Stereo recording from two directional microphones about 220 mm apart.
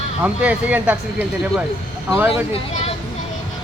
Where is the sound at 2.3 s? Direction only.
25° left (ahead or behind).